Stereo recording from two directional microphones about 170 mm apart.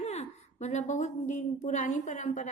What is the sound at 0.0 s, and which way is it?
A woman's voice, 40° left (ahead or behind).